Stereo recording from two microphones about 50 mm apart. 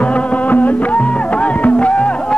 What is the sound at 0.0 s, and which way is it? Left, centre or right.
Music, left.